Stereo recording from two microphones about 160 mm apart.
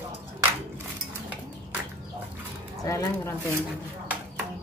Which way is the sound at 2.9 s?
20° left (ahead or behind).